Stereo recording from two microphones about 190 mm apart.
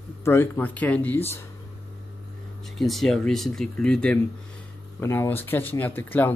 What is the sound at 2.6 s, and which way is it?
Speech, centre (ahead or behind).